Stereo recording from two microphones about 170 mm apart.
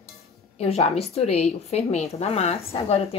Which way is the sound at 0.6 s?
40° left (ahead or behind).